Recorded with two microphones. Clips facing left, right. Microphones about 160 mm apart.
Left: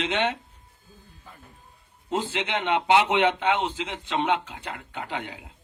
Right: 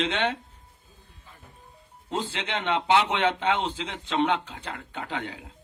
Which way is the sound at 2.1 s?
15° left (ahead or behind).